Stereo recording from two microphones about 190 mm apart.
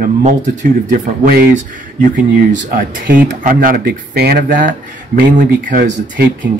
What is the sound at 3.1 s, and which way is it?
Speech, 45° right (ahead or behind).